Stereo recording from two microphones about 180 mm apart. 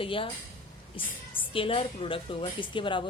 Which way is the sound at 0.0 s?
30° left (ahead or behind).